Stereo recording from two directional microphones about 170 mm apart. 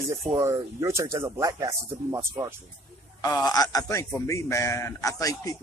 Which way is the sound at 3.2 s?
20° left (ahead or behind).